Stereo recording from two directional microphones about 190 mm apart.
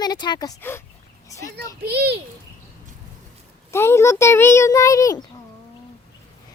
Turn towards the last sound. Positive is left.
turn(degrees=15)  # may be behind; listen again after turning